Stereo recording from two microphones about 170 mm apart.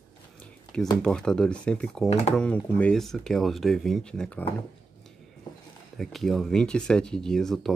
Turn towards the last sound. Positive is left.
turn(degrees=0)  # may be behind; listen again after turning